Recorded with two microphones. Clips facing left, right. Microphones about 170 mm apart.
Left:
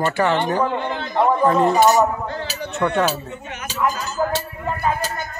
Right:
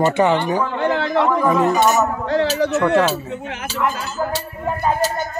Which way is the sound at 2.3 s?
90° right.